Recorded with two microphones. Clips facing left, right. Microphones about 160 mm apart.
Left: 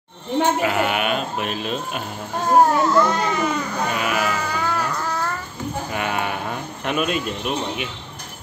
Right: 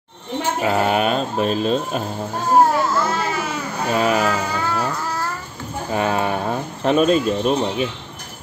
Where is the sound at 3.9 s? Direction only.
35° right (ahead or behind).